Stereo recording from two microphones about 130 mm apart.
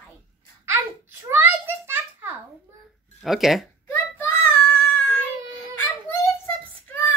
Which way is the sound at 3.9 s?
15° left (ahead or behind).